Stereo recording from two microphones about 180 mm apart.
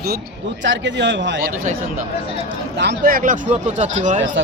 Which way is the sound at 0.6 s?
85° right.